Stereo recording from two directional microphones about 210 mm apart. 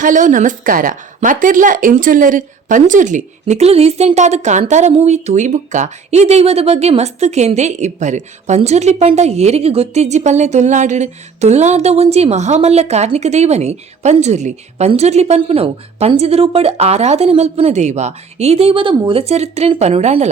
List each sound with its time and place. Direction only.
0.0 s a woman's voice: 35° right (ahead or behind)